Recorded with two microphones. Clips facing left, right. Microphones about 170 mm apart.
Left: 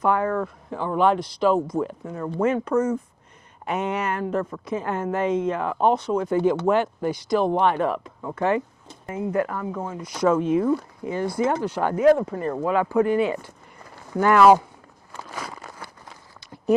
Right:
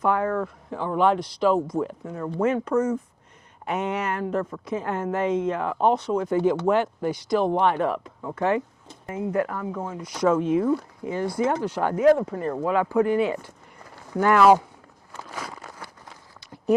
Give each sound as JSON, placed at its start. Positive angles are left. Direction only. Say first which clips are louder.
{"t": 0.0, "sound": "a woman's voice", "louder": "left 1 dB", "side_deg": 20}
{"t": 1.5, "sound": "a woman's voice", "louder": "left 1 dB", "side_deg": 30}
{"t": 15.1, "sound": "a sound", "louder": "left 1 dB", "side_deg": 20}